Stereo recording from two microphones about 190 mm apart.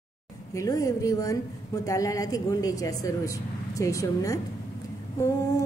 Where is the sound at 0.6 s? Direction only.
15° left (ahead or behind).